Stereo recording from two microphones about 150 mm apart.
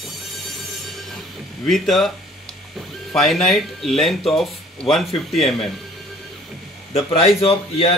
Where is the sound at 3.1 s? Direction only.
Centre (ahead or behind).